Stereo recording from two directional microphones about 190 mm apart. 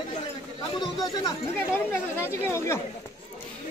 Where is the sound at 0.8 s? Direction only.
20° left (ahead or behind).